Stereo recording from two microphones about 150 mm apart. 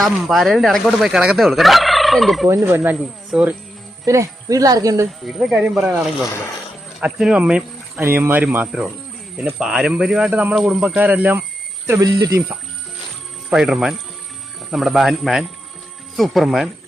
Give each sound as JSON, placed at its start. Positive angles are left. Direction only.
{"t": 0.0, "sound": "fowl", "side_deg": 0}
{"t": 2.5, "sound": "speech", "side_deg": -20}
{"t": 4.0, "sound": "speech", "side_deg": -20}
{"t": 5.2, "sound": "fowl", "side_deg": 0}
{"t": 7.0, "sound": "speech", "side_deg": -5}
{"t": 11.9, "sound": "speech", "side_deg": -25}
{"t": 13.5, "sound": "fowl", "side_deg": -5}